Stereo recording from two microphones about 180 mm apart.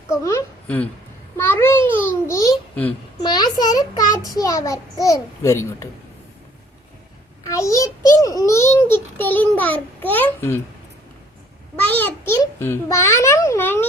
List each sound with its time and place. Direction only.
0.1 s a woman's voice: 15° left (ahead or behind)
7.4 s a child's voice: 20° left (ahead or behind)
11.8 s a child's voice: 10° left (ahead or behind)